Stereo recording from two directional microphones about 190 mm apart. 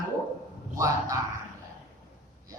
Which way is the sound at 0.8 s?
20° right (ahead or behind).